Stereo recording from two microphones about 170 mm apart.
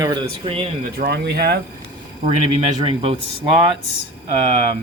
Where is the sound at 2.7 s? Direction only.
35° right (ahead or behind).